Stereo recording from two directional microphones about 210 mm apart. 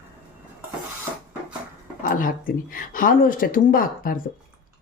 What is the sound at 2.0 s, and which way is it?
Speech, 40° left (ahead or behind).